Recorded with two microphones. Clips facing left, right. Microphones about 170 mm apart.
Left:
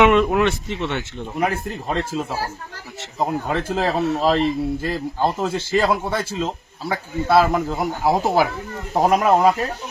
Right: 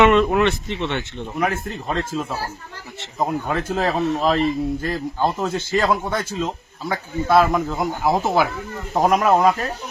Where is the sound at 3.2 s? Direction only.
Centre (ahead or behind).